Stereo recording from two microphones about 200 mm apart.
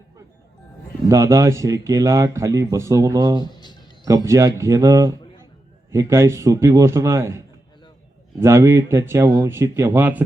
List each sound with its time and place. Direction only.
1.0 s speech: 15° right (ahead or behind)
3.4 s a sound: 20° left (ahead or behind)
4.0 s speech: 15° right (ahead or behind)